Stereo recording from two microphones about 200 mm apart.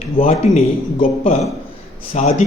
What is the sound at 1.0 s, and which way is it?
A man's voice, 40° left (ahead or behind).